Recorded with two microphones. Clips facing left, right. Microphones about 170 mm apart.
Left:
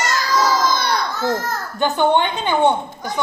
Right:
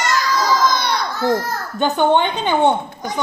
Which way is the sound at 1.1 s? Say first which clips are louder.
Right 2 dB; 15° right (ahead or behind).